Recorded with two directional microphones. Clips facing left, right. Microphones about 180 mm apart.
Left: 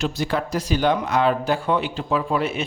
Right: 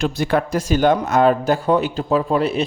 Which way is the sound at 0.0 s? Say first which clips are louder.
Right 5 dB; 55° right (ahead or behind).